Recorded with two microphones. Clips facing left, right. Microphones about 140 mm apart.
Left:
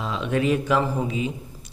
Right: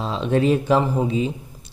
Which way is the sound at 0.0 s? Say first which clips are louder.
Right 4 dB; 30° right (ahead or behind).